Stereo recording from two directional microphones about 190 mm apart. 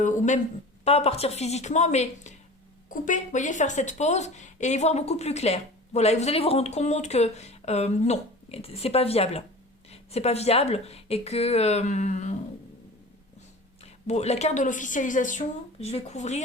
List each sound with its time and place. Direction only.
0.0 s a sound: 40° left (ahead or behind)
0.9 s speech: 30° left (ahead or behind)
13.8 s speech: 35° left (ahead or behind)